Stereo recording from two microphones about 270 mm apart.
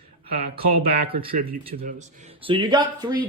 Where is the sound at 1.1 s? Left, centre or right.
Centre.